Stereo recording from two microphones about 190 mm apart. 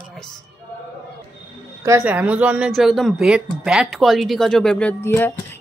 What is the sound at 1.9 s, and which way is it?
Speech, 10° right (ahead or behind).